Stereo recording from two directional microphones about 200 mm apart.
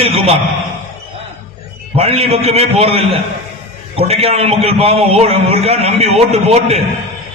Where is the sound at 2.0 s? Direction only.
30° right (ahead or behind).